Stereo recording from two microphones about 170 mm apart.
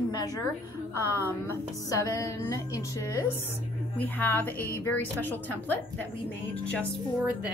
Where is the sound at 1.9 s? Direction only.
20° left (ahead or behind).